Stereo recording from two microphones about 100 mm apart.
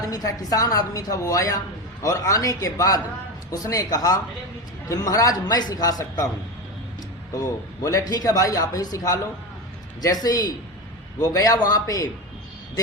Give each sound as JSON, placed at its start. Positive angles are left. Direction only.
{"t": 0.1, "sound": "a woman's voice", "side_deg": 40}
{"t": 7.3, "sound": "a woman's voice", "side_deg": 35}